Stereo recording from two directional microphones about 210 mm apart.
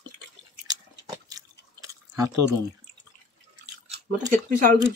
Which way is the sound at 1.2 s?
15° right (ahead or behind).